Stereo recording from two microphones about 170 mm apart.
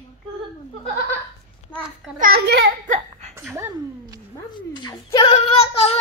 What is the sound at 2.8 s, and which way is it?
Laughter, 45° right (ahead or behind).